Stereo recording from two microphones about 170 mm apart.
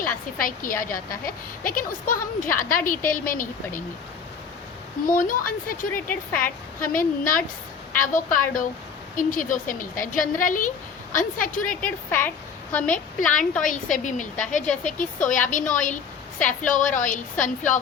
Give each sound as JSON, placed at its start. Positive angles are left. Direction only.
{"t": 0.0, "sound": "a woman's voice", "side_deg": 55}
{"t": 5.0, "sound": "a woman's voice", "side_deg": 55}
{"t": 6.1, "sound": "a woman's voice", "side_deg": 10}
{"t": 6.9, "sound": "a woman's voice", "side_deg": 55}
{"t": 11.8, "sound": "a woman's voice", "side_deg": 10}
{"t": 13.9, "sound": "a woman's voice", "side_deg": 50}
{"t": 14.6, "sound": "a woman's voice", "side_deg": 5}
{"t": 14.9, "sound": "a woman's voice", "side_deg": 50}